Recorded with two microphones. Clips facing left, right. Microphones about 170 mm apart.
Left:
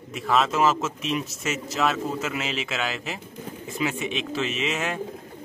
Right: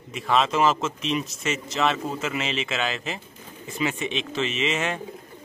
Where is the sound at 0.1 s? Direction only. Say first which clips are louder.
Even; centre (ahead or behind).